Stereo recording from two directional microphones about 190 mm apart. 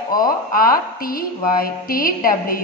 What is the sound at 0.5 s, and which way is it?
A woman's voice, 50° left (ahead or behind).